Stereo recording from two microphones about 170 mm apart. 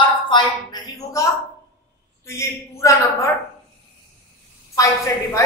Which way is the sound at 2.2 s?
15° left (ahead or behind).